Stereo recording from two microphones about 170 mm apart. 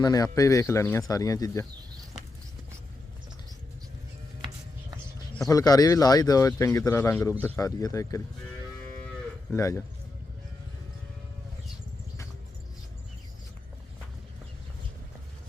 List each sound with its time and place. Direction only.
0.0 s speech: 20° left (ahead or behind)
5.5 s speech: 20° left (ahead or behind)
9.5 s speech: 15° left (ahead or behind)